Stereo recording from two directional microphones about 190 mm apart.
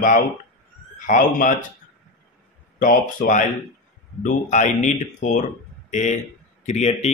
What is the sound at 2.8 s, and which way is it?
Speech, 45° left (ahead or behind).